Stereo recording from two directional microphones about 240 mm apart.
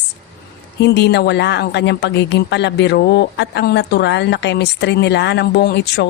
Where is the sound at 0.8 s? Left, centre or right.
Left.